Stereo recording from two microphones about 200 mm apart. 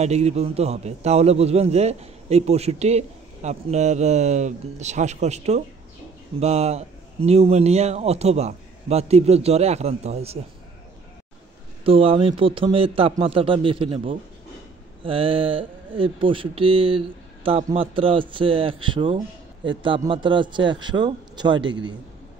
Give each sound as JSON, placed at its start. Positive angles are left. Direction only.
{"t": 0.0, "sound": "a man's voice", "side_deg": -30}
{"t": 11.8, "sound": "speech", "side_deg": -30}